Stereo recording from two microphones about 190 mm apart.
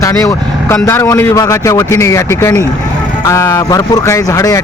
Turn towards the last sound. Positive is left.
turn(degrees=15)  # may be behind; listen again after turning